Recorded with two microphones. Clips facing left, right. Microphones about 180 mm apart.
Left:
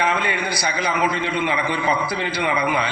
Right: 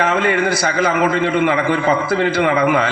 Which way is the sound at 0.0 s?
45° right (ahead or behind).